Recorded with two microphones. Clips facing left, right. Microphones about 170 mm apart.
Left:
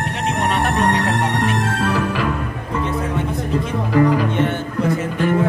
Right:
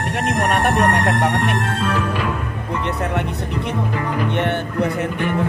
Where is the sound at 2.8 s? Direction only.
70° right (ahead or behind).